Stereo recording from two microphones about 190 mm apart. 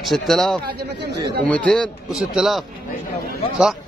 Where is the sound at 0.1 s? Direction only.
Centre (ahead or behind).